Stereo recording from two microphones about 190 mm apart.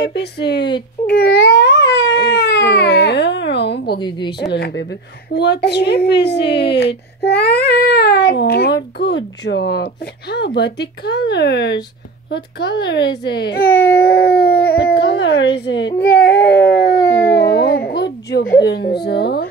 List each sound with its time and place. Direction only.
0.0 s speech: 60° left (ahead or behind)
1.0 s a sound: 55° left (ahead or behind)
4.0 s a woman's voice: 25° left (ahead or behind)
4.5 s speech: 60° left (ahead or behind)
16.0 s a sound: 55° left (ahead or behind)
19.0 s speech: 60° left (ahead or behind)